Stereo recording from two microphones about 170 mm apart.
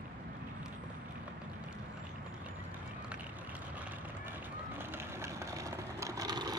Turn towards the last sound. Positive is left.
turn(degrees=-25)  # may be behind; listen again after turning